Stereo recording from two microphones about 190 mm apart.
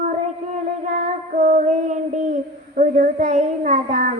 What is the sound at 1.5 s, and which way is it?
Child singing, 40° right (ahead or behind).